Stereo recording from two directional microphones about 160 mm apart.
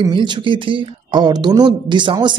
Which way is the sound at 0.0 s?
30° right (ahead or behind).